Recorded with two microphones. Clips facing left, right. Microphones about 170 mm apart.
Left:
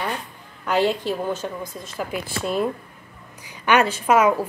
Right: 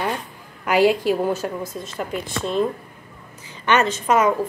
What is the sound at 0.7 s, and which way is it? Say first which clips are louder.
A woman's voice: right 4 dB; 10° right (ahead or behind).